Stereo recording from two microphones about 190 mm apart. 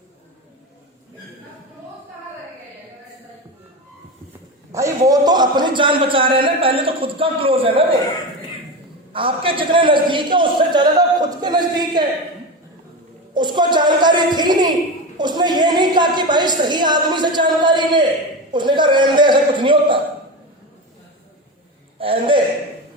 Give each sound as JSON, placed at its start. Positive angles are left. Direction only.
{"t": 4.7, "sound": "a man's voice", "side_deg": -15}
{"t": 9.1, "sound": "a man's voice", "side_deg": -30}
{"t": 13.3, "sound": "a man's voice", "side_deg": -25}
{"t": 21.9, "sound": "speech", "side_deg": -30}